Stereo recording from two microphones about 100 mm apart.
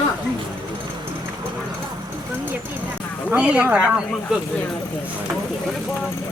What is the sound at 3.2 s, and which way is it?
Speech, 10° right (ahead or behind).